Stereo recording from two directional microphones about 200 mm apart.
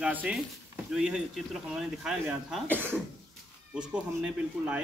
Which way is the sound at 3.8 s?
5° right (ahead or behind).